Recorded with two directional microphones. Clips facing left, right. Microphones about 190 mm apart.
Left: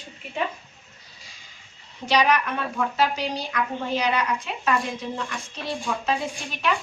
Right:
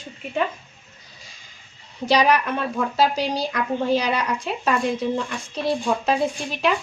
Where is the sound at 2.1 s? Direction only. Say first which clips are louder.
Right 3 dB; 35° right (ahead or behind).